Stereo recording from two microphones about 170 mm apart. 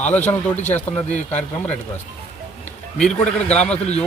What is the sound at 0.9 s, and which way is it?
Speech, 45° left (ahead or behind).